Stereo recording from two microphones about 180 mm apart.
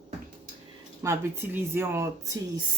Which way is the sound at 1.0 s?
15° right (ahead or behind).